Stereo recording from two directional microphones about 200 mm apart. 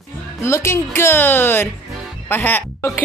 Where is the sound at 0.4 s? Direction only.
15° left (ahead or behind).